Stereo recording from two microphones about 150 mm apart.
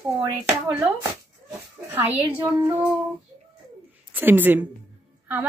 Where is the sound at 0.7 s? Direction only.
10° right (ahead or behind).